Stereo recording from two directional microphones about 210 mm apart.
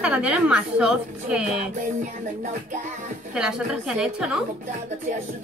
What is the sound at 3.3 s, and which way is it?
A woman's voice, 5° right (ahead or behind).